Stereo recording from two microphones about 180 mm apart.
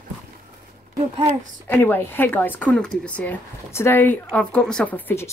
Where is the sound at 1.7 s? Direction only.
10° left (ahead or behind).